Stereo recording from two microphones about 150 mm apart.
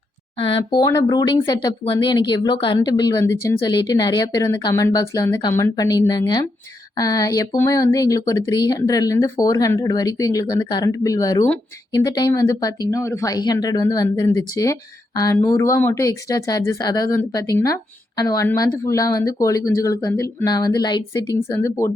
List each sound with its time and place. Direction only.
0.3 s speech: 35° left (ahead or behind); by 21.9 s 20° left (ahead or behind)